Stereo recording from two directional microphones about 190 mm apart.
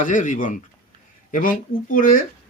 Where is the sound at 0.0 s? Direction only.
40° left (ahead or behind).